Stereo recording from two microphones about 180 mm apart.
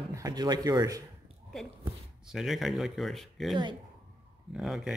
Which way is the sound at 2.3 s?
Centre (ahead or behind).